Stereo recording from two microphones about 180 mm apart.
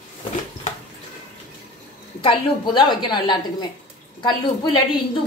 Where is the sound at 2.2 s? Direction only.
25° left (ahead or behind).